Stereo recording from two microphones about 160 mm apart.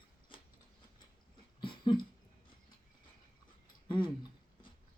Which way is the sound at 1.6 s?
30° left (ahead or behind).